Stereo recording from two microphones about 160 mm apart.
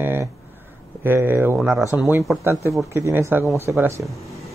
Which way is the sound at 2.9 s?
15° right (ahead or behind).